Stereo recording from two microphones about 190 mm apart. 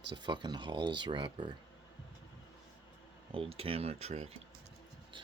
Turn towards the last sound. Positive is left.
turn(degrees=-35)  # may be behind; listen again after turning